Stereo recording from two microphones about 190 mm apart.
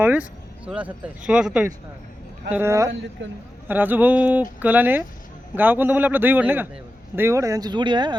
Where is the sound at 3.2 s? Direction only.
75° right (ahead or behind).